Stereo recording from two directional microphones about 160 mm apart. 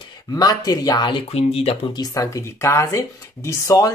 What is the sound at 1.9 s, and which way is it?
Speech, 20° left (ahead or behind).